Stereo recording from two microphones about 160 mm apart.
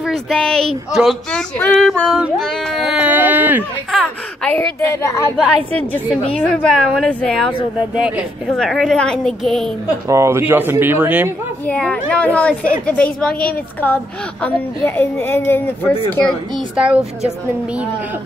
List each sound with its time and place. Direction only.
0.0 s a woman's voice: centre (ahead or behind)
3.9 s a sound: 5° left (ahead or behind)
4.6 s a woman's voice: 15° left (ahead or behind)
10.0 s speech: 20° right (ahead or behind)
11.6 s a woman's voice: 10° left (ahead or behind)
15.0 s a woman's voice: 15° left (ahead or behind)
16.7 s speech: 5° right (ahead or behind)